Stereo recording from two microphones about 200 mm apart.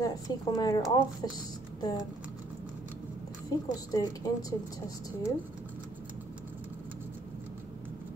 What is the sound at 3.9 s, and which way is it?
Speech, 20° left (ahead or behind).